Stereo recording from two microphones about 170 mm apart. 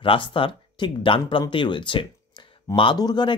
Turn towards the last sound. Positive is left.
turn(degrees=25)  # may be behind; listen again after turning